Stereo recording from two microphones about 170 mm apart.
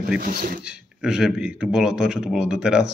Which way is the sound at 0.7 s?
5° right (ahead or behind).